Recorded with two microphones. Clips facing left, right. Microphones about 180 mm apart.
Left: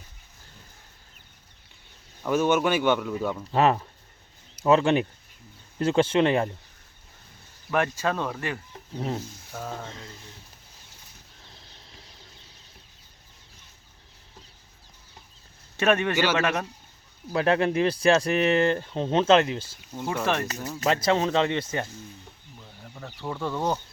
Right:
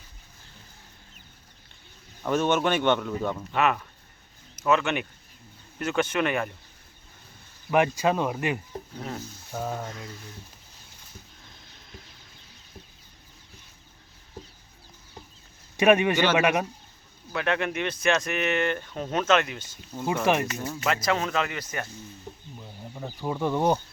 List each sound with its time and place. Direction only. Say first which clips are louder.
2.2 s speech: left 1 dB; 5° left (ahead or behind)
3.5 s speech: left 5 dB; 30° left (ahead or behind)
7.7 s speech: right 3 dB; 15° right (ahead or behind)
9.0 s speech: left 6 dB; 25° left (ahead or behind)
9.5 s speech: right 4 dB; 15° right (ahead or behind)
15.8 s speech: right 3 dB; 15° right (ahead or behind)
17.3 s speech: left 5 dB; 35° left (ahead or behind)
20.2 s speech: right 3 dB; 10° right (ahead or behind)
20.8 s speech: left 4 dB; 30° left (ahead or behind)
22.5 s a sound: even; 15° right (ahead or behind)
23.3 s speech: right 4 dB; 15° right (ahead or behind)